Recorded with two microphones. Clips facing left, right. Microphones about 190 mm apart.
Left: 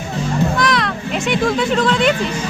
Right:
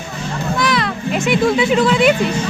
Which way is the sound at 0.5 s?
Centre (ahead or behind).